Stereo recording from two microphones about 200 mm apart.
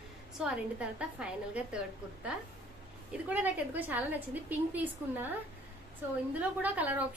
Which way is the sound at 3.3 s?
10° right (ahead or behind).